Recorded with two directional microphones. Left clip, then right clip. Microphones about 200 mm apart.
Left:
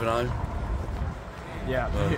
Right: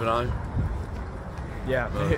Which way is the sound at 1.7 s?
55° right (ahead or behind).